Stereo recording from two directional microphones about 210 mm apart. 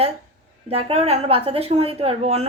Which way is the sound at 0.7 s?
25° right (ahead or behind).